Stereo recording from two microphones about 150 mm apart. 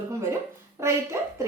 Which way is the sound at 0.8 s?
20° right (ahead or behind).